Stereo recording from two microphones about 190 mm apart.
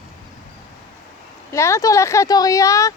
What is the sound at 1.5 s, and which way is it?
Speech, 15° left (ahead or behind).